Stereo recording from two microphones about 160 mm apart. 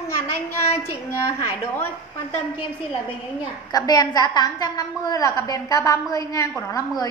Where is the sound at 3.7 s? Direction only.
25° left (ahead or behind).